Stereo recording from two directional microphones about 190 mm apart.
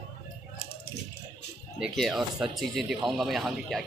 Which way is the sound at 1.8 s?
Centre (ahead or behind).